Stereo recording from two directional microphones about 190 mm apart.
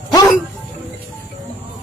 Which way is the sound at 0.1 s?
20° left (ahead or behind).